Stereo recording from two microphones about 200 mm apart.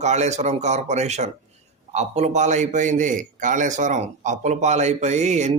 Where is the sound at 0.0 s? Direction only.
35° right (ahead or behind).